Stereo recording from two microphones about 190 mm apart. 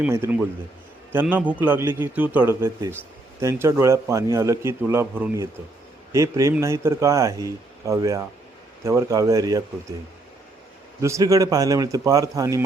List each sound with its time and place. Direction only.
0.0 s a man's voice: 10° right (ahead or behind)
11.0 s a man's voice: 15° right (ahead or behind)